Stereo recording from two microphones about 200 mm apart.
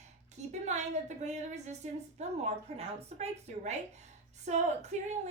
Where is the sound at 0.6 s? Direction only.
35° right (ahead or behind).